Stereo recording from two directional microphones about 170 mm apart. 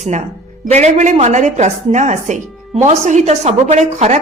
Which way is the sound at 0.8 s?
45° right (ahead or behind).